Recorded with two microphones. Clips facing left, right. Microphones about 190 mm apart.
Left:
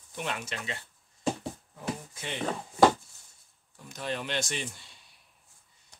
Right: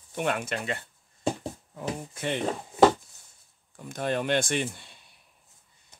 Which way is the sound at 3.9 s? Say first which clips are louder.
Right 7 dB; 50° right (ahead or behind).